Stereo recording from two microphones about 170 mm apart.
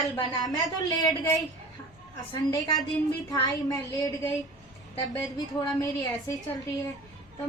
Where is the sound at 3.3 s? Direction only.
25° left (ahead or behind).